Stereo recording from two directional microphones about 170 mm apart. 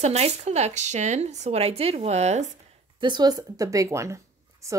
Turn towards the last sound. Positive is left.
turn(degrees=-15)  # may be behind; listen again after turning